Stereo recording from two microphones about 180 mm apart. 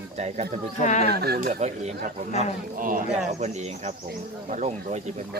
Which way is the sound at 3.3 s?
40° right (ahead or behind).